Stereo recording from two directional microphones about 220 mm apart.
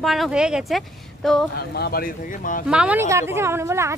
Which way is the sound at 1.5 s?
45° left (ahead or behind).